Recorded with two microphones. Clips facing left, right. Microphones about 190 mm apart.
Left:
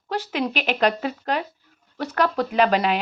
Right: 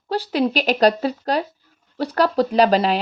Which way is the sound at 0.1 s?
35° right (ahead or behind).